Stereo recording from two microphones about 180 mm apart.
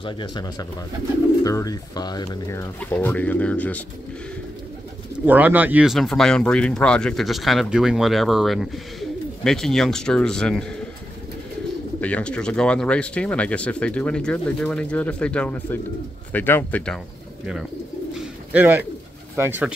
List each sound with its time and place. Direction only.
0.0 s speech: 25° left (ahead or behind); by 3.8 s 10° left (ahead or behind)
5.2 s speech: 10° right (ahead or behind)
12.0 s speech: 5° left (ahead or behind)
18.1 s bird: 5° right (ahead or behind)
19.3 s speech: 10° right (ahead or behind)